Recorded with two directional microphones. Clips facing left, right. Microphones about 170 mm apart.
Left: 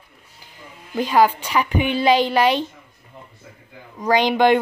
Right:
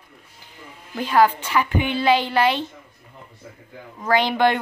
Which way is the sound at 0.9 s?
15° left (ahead or behind).